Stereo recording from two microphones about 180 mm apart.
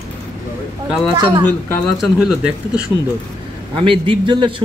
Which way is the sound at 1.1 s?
25° right (ahead or behind).